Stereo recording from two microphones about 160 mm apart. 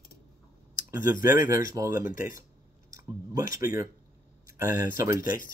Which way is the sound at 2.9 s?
20° right (ahead or behind).